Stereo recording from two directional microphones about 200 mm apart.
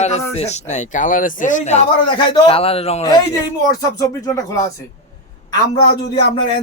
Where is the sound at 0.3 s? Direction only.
35° left (ahead or behind).